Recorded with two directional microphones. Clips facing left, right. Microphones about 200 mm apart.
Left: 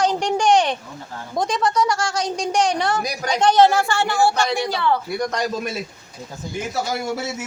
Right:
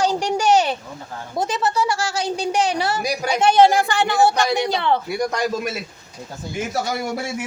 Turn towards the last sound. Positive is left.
turn(degrees=-5)  # may be behind; listen again after turning